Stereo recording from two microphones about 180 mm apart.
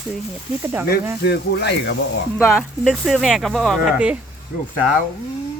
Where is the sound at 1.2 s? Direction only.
70° left (ahead or behind).